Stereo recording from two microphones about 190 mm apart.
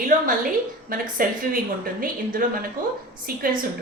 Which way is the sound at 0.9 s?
45° right (ahead or behind).